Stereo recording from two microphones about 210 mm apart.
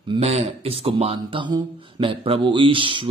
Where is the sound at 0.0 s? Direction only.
25° right (ahead or behind).